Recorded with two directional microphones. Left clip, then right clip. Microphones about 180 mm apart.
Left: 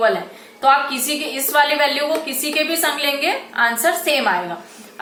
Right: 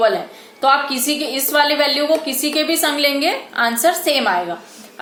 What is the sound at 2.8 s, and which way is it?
A woman's voice, 65° right (ahead or behind).